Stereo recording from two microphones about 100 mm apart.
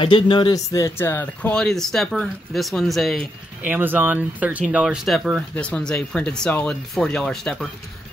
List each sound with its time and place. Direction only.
0.0 s speech: 60° left (ahead or behind)
0.5 s speech: 35° left (ahead or behind); by 3.3 s centre (ahead or behind)
3.6 s speech: 15° right (ahead or behind)
4.8 s speech: centre (ahead or behind)